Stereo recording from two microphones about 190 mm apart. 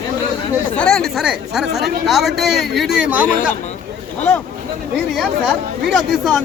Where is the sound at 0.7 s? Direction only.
5° left (ahead or behind).